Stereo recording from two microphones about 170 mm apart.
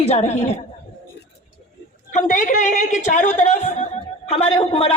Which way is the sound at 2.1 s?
50° left (ahead or behind).